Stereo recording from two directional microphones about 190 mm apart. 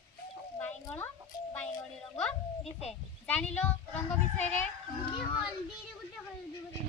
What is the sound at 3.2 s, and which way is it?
Speech, 5° left (ahead or behind).